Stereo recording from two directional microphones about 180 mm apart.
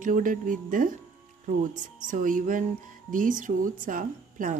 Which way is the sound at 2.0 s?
45° right (ahead or behind).